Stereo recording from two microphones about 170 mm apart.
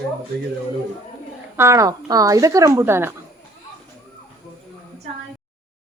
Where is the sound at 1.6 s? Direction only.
15° right (ahead or behind).